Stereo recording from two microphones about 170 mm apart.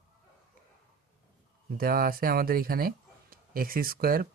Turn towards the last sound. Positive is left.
turn(degrees=-60)  # may be behind; listen again after turning